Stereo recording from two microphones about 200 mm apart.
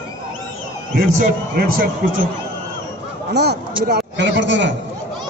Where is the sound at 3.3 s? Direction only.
55° right (ahead or behind).